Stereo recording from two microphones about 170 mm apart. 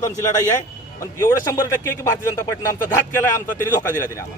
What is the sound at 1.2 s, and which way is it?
Speech, 20° left (ahead or behind).